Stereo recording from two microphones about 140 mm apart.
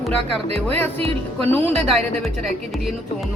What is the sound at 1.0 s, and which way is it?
Speech, 45° right (ahead or behind).